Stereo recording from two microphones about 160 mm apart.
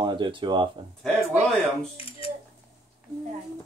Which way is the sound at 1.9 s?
35° left (ahead or behind).